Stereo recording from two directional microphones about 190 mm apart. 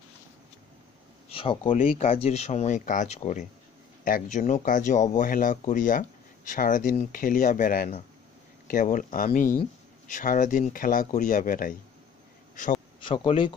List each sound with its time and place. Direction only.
1.3 s speech: 30° left (ahead or behind); by 11.7 s 45° left (ahead or behind)
13.0 s speech: 30° left (ahead or behind)